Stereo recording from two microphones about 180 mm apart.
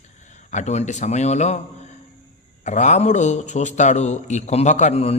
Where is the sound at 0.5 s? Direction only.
40° left (ahead or behind).